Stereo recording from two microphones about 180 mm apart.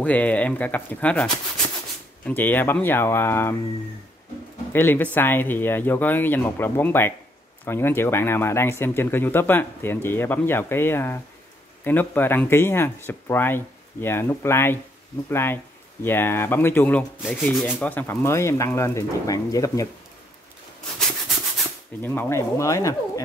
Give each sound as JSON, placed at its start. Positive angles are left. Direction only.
{"t": 0.0, "sound": "speech", "side_deg": 10}
{"t": 4.7, "sound": "speech", "side_deg": 10}
{"t": 22.0, "sound": "speech", "side_deg": 10}